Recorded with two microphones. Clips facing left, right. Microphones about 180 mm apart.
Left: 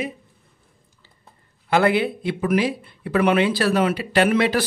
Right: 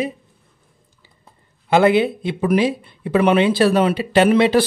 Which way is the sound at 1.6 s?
20° right (ahead or behind).